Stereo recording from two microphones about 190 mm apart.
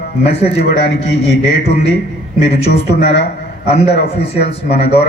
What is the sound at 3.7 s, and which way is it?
A man's voice, 35° left (ahead or behind).